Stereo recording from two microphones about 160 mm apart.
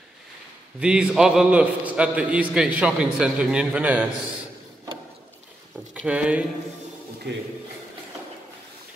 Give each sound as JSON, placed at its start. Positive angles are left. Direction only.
{"t": 0.7, "sound": "a man's voice", "side_deg": -5}
{"t": 6.0, "sound": "a man's voice", "side_deg": -10}
{"t": 7.3, "sound": "a man's voice", "side_deg": -90}